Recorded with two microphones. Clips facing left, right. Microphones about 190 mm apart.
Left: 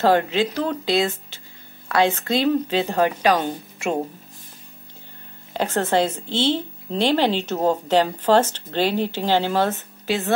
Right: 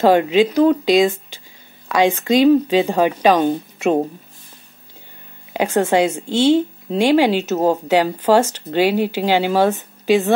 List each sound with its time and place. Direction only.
0.0 s a woman's voice: 15° right (ahead or behind)
5.5 s a woman's voice: 15° right (ahead or behind)